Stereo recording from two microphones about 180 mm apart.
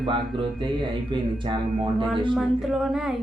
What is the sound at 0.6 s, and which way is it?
Speech, 25° right (ahead or behind).